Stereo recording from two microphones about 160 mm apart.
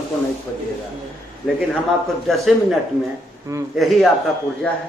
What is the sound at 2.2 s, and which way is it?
A man's voice, centre (ahead or behind).